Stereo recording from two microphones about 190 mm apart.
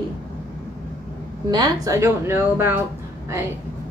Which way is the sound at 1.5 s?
20° right (ahead or behind).